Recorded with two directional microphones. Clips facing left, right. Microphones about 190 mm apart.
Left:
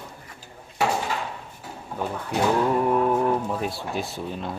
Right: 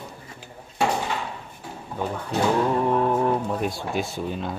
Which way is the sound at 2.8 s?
5° left (ahead or behind).